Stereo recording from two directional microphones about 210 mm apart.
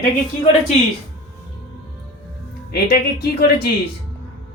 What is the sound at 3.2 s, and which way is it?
Speech, 50° left (ahead or behind).